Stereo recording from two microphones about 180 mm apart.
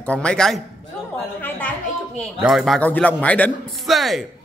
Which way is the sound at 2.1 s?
Centre (ahead or behind).